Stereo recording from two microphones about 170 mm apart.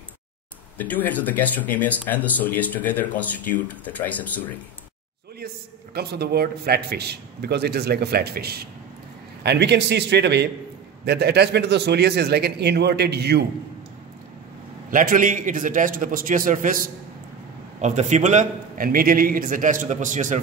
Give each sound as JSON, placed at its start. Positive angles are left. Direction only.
{"t": 0.7, "sound": "speech", "side_deg": 10}
{"t": 5.9, "sound": "a man's voice", "side_deg": -70}
{"t": 9.4, "sound": "a man's voice", "side_deg": -80}
{"t": 14.9, "sound": "a man's voice", "side_deg": -50}
{"t": 17.7, "sound": "a man's voice", "side_deg": -45}